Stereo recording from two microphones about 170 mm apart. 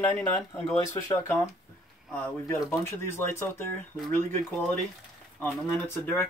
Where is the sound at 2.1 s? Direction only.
15° left (ahead or behind).